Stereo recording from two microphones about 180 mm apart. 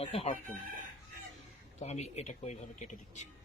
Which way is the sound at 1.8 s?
40° left (ahead or behind).